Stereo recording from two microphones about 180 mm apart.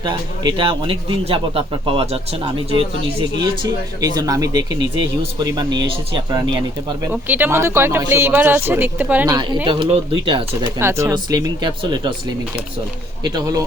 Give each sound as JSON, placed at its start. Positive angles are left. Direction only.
{"t": 0.0, "sound": "a man's voice", "side_deg": -25}
{"t": 7.0, "sound": "speech", "side_deg": -10}
{"t": 9.3, "sound": "a man's voice", "side_deg": -25}
{"t": 10.8, "sound": "a man's voice", "side_deg": -15}
{"t": 13.2, "sound": "a man's voice", "side_deg": -20}